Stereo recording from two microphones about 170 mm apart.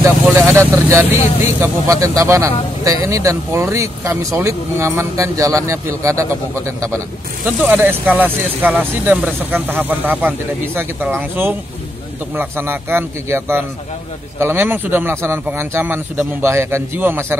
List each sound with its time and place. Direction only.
0.0 s speech: 15° right (ahead or behind)